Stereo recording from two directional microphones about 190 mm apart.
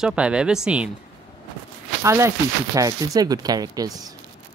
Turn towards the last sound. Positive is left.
turn(degrees=-20)  # may be behind; listen again after turning